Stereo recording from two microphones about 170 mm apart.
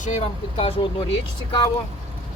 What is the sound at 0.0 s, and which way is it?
Speech, 45° left (ahead or behind).